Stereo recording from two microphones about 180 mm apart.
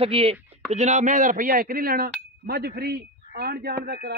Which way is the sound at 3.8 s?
65° right (ahead or behind).